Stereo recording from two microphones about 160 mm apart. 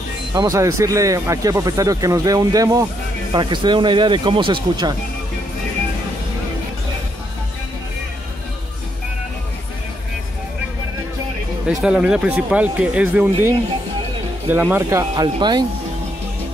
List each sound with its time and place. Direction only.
0.3 s speech: 25° right (ahead or behind)
11.8 s speech: 5° right (ahead or behind)
15.3 s speech: 30° right (ahead or behind)